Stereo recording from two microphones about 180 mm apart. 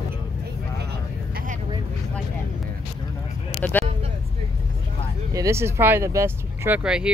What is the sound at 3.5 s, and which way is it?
Vehicle, 5° left (ahead or behind).